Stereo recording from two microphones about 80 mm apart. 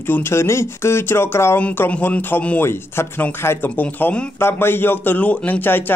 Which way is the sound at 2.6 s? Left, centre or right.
Left.